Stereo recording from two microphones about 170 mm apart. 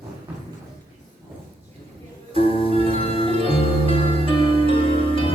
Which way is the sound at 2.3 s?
35° left (ahead or behind).